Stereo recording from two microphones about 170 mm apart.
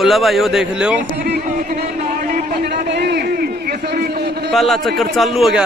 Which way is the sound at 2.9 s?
80° right.